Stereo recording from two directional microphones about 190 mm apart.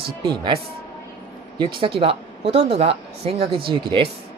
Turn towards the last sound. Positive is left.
turn(degrees=-25)  # may be behind; listen again after turning